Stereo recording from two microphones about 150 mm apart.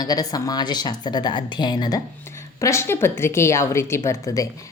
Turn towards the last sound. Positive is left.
turn(degrees=20)  # may be behind; listen again after turning